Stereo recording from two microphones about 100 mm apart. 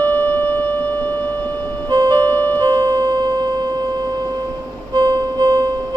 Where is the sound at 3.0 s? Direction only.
45° right (ahead or behind).